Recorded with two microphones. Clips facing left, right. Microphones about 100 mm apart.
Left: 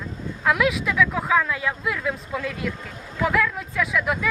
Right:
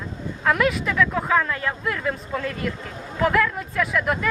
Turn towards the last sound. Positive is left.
turn(degrees=0)  # may be behind; listen again after turning